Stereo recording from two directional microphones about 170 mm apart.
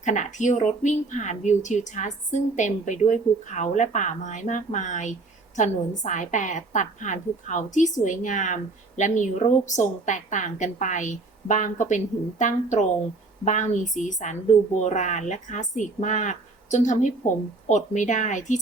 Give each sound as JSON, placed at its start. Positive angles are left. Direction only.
{"t": 0.0, "sound": "speech", "side_deg": 45}